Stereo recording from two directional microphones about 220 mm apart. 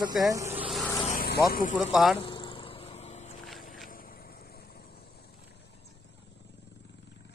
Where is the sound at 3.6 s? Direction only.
40° left (ahead or behind).